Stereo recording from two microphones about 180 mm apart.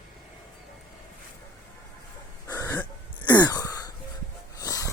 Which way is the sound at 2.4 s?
20° left (ahead or behind).